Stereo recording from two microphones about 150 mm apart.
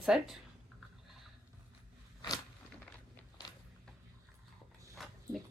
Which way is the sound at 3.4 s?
25° left (ahead or behind).